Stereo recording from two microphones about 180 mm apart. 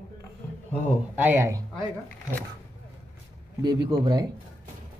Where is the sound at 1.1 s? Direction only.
10° right (ahead or behind).